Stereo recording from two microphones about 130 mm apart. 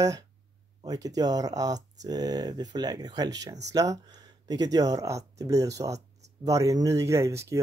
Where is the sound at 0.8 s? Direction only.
30° right (ahead or behind).